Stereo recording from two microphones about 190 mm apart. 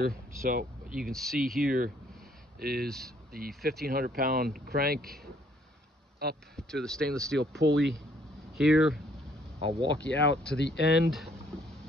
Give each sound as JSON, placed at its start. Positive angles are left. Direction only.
{"t": 0.0, "sound": "speech", "side_deg": -45}
{"t": 1.1, "sound": "speech", "side_deg": 0}
{"t": 1.6, "sound": "speech", "side_deg": -50}
{"t": 6.5, "sound": "speech", "side_deg": 5}
{"t": 7.3, "sound": "speech", "side_deg": -65}
{"t": 8.5, "sound": "speech", "side_deg": -5}
{"t": 9.6, "sound": "speech", "side_deg": -30}
{"t": 9.9, "sound": "speech", "side_deg": 5}
{"t": 10.6, "sound": "speech", "side_deg": 65}